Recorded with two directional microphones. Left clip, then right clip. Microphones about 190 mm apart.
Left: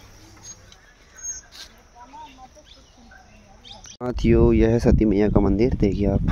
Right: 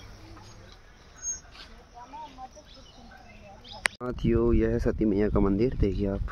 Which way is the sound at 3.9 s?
25° left (ahead or behind).